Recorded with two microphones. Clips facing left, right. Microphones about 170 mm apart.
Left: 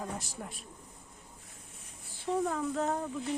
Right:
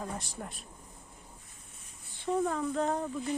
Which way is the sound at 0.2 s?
Centre (ahead or behind).